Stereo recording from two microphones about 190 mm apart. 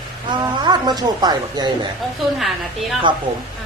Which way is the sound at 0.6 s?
20° right (ahead or behind).